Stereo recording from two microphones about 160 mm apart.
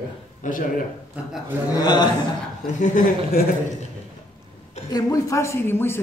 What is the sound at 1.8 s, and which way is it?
Speech, 25° left (ahead or behind).